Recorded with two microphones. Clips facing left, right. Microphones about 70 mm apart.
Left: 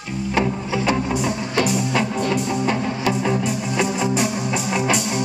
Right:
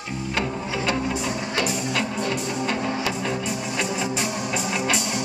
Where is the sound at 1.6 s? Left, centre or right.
Centre.